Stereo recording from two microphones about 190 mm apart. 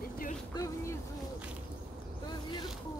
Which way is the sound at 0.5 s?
20° left (ahead or behind).